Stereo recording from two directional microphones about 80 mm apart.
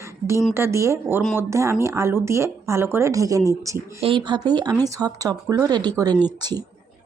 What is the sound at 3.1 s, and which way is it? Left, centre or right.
Speech, right.